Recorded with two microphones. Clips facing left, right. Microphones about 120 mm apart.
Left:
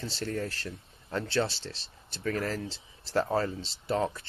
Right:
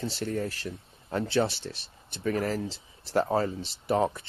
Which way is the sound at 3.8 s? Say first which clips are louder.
Right 4 dB; 20° right (ahead or behind).